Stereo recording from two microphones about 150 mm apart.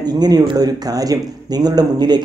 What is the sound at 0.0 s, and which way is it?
Speech, 25° right (ahead or behind).